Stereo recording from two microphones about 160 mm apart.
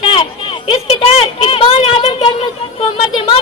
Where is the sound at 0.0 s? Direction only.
35° left (ahead or behind).